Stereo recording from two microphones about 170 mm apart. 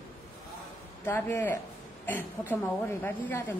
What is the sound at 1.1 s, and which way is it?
A woman's voice, 15° left (ahead or behind).